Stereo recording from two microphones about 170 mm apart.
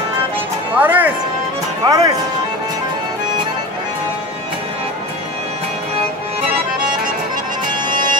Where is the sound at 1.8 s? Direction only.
20° right (ahead or behind).